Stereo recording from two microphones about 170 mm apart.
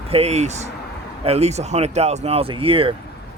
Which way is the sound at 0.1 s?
40° right (ahead or behind).